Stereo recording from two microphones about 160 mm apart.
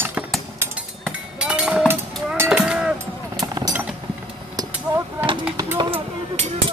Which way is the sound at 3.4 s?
25° right (ahead or behind).